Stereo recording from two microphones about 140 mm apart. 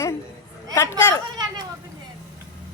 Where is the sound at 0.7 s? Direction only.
20° left (ahead or behind).